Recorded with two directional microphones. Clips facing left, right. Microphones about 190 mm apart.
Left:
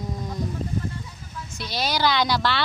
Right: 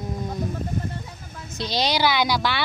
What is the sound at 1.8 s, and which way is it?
Speech, 15° right (ahead or behind).